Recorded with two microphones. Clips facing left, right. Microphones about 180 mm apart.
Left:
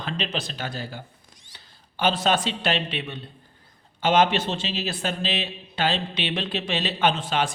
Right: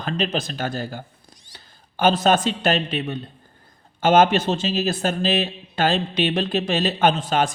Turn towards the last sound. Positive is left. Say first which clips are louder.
# right 4 dB
turn(degrees=-40)  # may be behind; listen again after turning